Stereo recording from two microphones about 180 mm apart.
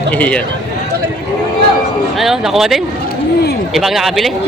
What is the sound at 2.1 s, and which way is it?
Speech, centre (ahead or behind).